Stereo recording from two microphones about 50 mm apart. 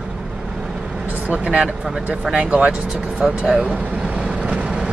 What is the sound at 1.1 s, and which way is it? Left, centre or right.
Speech, right.